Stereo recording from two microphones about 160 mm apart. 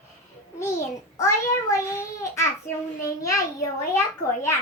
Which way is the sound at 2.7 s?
50° left (ahead or behind).